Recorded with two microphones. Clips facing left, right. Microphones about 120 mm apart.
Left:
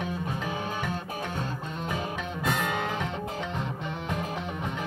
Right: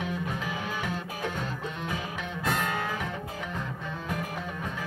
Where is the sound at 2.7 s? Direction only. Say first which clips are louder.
Left 2 dB; 20° left (ahead or behind).